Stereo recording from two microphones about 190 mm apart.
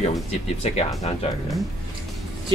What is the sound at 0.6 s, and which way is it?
Speech, 35° left (ahead or behind).